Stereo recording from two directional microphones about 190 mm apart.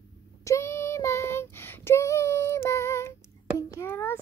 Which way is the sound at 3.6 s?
15° left (ahead or behind).